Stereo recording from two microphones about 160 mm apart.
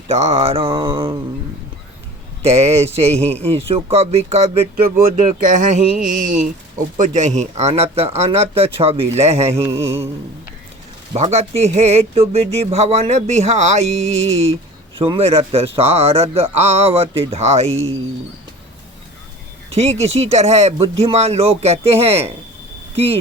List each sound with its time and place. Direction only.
0.1 s speech: 40° right (ahead or behind)
2.4 s speech: 40° right (ahead or behind)
3.2 s speech: 10° left (ahead or behind)
3.5 s speech: 40° right (ahead or behind)
9.5 s mantra: 15° right (ahead or behind)
11.1 s speech: 40° right (ahead or behind)
19.7 s speech: 40° right (ahead or behind)